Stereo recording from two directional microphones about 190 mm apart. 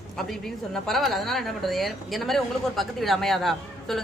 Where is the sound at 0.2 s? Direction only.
Centre (ahead or behind).